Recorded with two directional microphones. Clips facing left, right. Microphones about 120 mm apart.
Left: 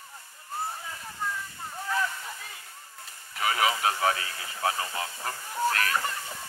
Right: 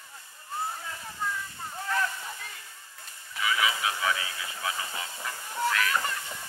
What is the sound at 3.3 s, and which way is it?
Speech, 45° left (ahead or behind).